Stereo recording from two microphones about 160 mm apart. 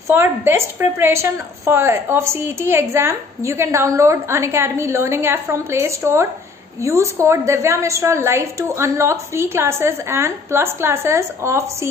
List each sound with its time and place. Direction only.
0.1 s a woman's voice: 15° right (ahead or behind)